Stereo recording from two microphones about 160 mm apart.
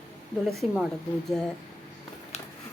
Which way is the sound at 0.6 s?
40° left (ahead or behind).